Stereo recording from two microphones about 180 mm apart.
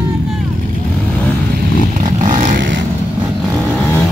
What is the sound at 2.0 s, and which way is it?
Vehicle, 45° right (ahead or behind).